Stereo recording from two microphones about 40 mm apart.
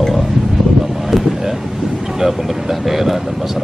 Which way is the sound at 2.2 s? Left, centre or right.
Centre.